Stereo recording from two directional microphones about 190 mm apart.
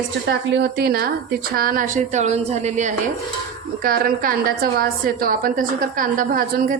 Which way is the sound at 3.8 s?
50° right (ahead or behind).